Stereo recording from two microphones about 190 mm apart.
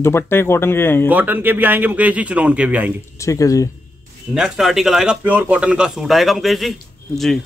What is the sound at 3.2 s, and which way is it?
Speech, 15° left (ahead or behind).